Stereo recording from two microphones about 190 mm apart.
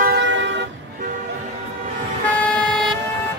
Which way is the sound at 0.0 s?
65° right (ahead or behind).